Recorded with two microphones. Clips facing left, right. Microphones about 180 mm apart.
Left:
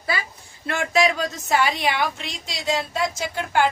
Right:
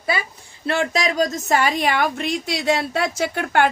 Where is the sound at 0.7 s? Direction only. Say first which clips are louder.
Even; 35° right (ahead or behind).